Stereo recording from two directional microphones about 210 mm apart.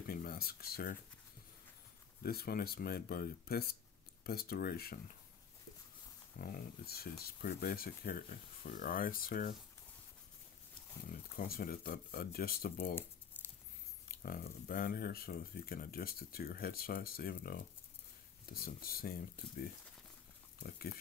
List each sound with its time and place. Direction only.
0.0 s a sound: 45° left (ahead or behind)
2.2 s speech: 45° left (ahead or behind)
6.3 s speech: 45° left (ahead or behind)
11.1 s speech: 45° left (ahead or behind)
13.4 s a sound: 10° left (ahead or behind)
14.0 s speech: 45° left (ahead or behind)